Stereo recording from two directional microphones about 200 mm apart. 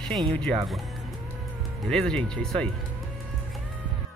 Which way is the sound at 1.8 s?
5° left (ahead or behind).